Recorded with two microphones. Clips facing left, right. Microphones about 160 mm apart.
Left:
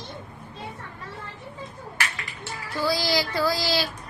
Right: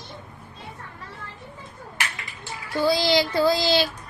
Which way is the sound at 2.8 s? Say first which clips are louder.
Right 4 dB; 25° right (ahead or behind).